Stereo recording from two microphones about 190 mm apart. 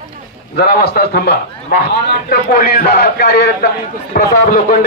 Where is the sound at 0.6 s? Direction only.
55° left (ahead or behind).